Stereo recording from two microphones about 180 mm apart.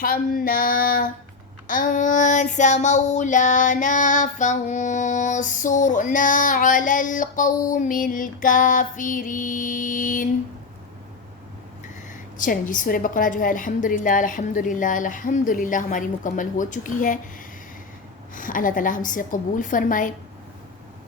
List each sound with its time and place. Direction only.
0.0 s child singing: 50° left (ahead or behind)
12.4 s child singing: 50° left (ahead or behind)
18.3 s child singing: 50° left (ahead or behind)